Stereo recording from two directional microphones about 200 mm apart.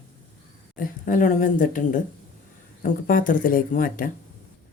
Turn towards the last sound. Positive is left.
turn(degrees=45)  # may be behind; listen again after turning